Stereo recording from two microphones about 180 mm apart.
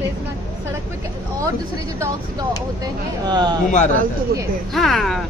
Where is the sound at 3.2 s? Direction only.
25° right (ahead or behind).